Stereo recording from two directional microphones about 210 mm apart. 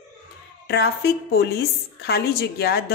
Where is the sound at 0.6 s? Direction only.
50° left (ahead or behind).